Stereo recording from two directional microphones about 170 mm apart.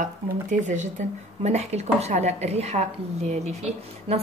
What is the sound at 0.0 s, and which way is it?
Speech, 45° right (ahead or behind).